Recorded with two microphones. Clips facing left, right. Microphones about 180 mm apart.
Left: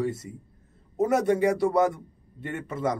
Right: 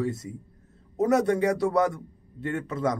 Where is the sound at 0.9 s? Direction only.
10° left (ahead or behind).